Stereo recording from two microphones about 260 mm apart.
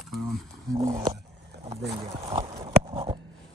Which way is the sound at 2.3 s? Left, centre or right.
Right.